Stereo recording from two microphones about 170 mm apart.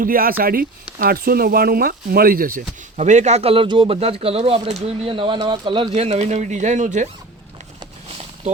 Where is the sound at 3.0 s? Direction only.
45° right (ahead or behind).